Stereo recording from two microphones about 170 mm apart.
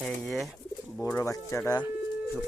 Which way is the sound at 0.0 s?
5° left (ahead or behind).